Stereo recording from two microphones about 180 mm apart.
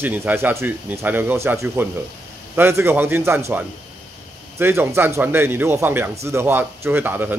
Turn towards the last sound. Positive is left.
turn(degrees=-10)  # may be behind; listen again after turning